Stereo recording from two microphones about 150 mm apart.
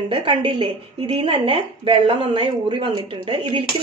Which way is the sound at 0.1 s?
35° right (ahead or behind).